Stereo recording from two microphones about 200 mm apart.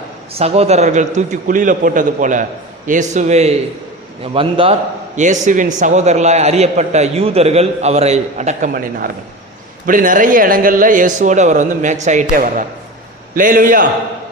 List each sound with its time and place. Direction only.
0.3 s a man's voice: 30° right (ahead or behind)